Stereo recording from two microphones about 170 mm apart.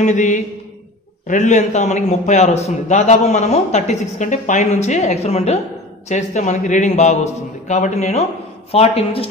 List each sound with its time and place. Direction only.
0.0 s a man's voice: 45° left (ahead or behind)